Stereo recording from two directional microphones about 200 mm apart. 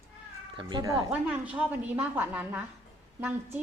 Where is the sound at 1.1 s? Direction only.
5° right (ahead or behind).